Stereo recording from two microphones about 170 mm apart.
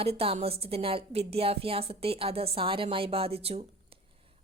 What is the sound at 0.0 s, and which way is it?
Speech, 35° right (ahead or behind).